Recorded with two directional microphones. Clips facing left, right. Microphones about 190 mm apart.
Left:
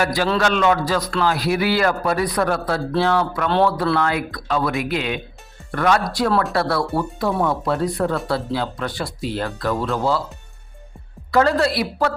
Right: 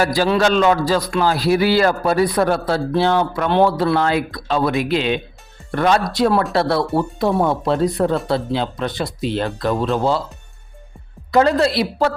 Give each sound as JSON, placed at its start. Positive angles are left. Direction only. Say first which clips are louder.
{"t": 0.0, "sound": "a man's voice", "louder": "right 3 dB", "side_deg": -35}
{"t": 11.3, "sound": "speech", "louder": "right 2 dB", "side_deg": -20}